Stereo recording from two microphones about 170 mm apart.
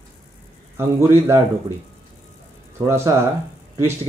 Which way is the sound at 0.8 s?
15° right (ahead or behind).